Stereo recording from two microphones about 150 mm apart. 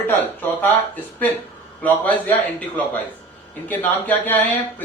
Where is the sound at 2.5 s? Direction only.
10° left (ahead or behind).